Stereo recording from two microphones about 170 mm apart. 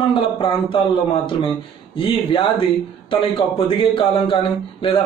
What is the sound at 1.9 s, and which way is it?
Speech, 30° left (ahead or behind).